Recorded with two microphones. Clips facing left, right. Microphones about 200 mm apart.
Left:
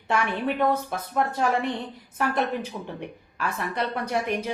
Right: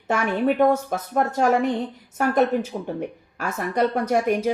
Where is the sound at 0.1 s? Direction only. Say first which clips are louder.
Right 4 dB; 45° right (ahead or behind).